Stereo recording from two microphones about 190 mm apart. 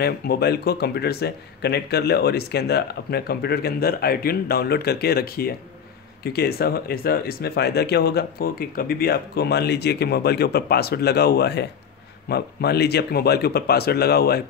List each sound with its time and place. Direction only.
0.0 s speech: 55° left (ahead or behind)